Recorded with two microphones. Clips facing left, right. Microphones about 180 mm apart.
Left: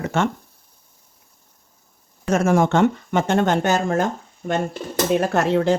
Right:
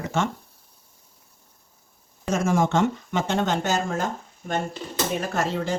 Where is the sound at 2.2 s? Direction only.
60° left (ahead or behind).